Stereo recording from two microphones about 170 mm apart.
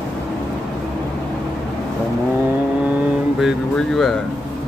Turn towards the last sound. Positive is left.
turn(degrees=0)  # may be behind; listen again after turning